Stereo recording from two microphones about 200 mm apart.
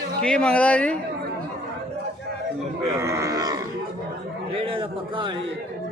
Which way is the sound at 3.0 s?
15° right (ahead or behind).